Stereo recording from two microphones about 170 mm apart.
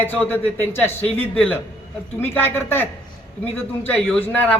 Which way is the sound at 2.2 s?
15° left (ahead or behind).